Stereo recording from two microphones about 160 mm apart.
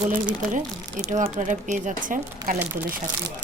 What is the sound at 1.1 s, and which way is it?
Speech, 45° right (ahead or behind).